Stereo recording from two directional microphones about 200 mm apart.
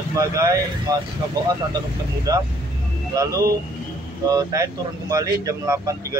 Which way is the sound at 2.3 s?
15° right (ahead or behind).